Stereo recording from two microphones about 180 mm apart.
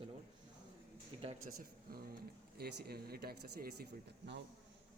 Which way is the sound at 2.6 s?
65° right (ahead or behind).